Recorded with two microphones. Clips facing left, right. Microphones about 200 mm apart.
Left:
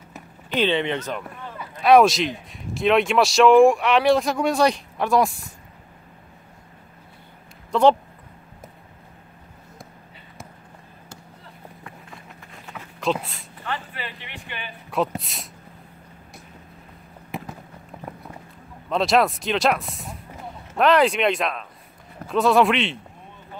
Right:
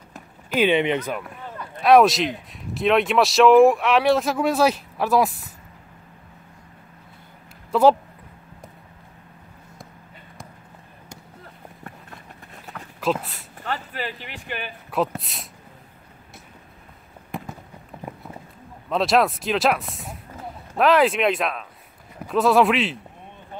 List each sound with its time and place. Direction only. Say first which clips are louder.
0.6 s speech: right 3 dB; 15° right (ahead or behind)
1.6 s speech: even; centre (ahead or behind)
7.7 s speech: right 1 dB; 5° right (ahead or behind)
12.7 s a sound: even; centre (ahead or behind)
13.6 s speech: right 2 dB; 40° right (ahead or behind)
14.9 s speech: even; centre (ahead or behind)
18.9 s speech: even; centre (ahead or behind)